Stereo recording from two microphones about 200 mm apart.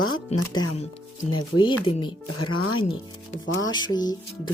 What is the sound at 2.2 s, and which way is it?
Speech, 90° left.